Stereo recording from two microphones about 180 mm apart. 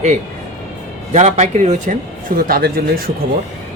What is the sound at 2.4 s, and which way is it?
Speech, 55° right (ahead or behind).